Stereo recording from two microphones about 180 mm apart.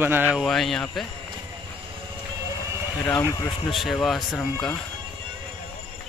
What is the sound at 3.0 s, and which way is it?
Speech, 20° left (ahead or behind).